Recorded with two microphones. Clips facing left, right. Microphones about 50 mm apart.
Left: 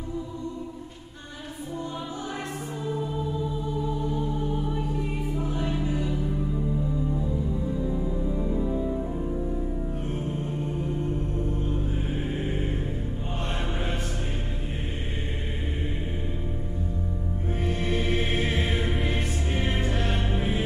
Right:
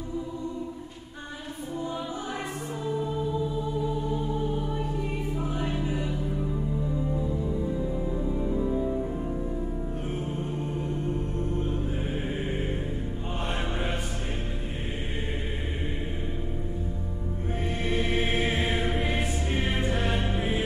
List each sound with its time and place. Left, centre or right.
5.4 s music: centre
11.5 s music: centre
17.6 s music: centre